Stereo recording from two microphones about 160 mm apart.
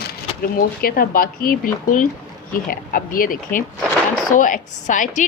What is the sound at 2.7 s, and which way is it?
A woman's voice, 60° left (ahead or behind).